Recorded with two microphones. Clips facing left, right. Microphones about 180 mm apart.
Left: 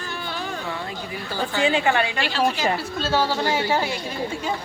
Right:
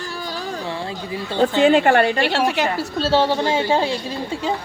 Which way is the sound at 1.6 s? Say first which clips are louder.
Right 6 dB; 50° right (ahead or behind).